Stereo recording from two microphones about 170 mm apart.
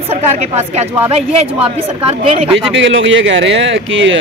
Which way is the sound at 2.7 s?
90° right.